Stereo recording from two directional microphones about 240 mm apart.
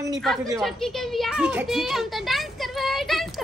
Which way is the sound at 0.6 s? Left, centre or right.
Centre.